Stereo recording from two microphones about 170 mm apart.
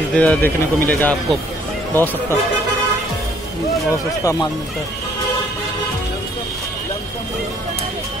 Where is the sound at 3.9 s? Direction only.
20° left (ahead or behind).